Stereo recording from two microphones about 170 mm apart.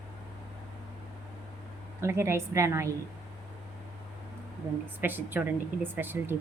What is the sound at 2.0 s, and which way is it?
Speech, 15° right (ahead or behind).